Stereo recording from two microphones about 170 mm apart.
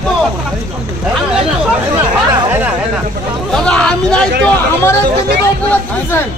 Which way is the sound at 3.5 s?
5° left (ahead or behind).